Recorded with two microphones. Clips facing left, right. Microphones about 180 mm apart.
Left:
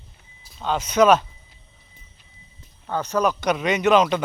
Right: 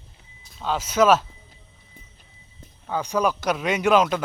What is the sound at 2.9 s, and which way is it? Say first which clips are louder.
Speech: left 1 dB; 10° right (ahead or behind).